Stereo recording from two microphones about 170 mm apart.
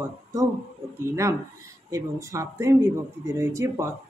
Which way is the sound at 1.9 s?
20° right (ahead or behind).